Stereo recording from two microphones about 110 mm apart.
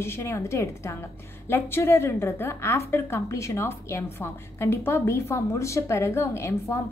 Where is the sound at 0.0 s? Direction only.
25° left (ahead or behind).